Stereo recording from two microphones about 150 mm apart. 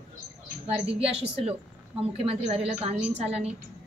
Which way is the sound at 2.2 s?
45° right (ahead or behind).